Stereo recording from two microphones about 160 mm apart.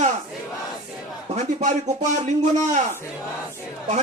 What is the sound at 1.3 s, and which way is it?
Speech, 45° right (ahead or behind).